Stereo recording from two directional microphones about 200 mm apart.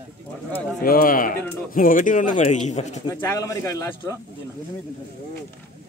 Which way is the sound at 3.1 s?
10° left (ahead or behind).